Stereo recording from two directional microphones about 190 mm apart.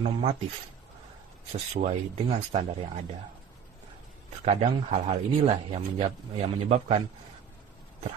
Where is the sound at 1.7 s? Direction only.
35° right (ahead or behind).